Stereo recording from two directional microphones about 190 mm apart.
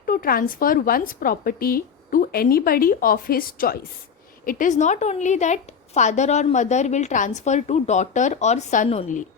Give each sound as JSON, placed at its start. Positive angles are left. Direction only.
{"t": 0.0, "sound": "a woman's voice", "side_deg": 50}